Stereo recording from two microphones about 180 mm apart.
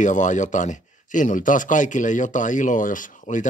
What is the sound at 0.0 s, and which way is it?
Speech, 45° left (ahead or behind).